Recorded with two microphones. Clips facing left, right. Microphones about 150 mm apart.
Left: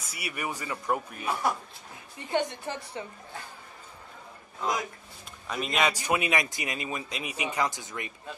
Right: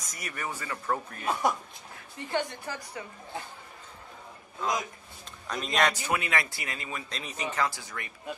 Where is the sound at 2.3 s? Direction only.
20° left (ahead or behind).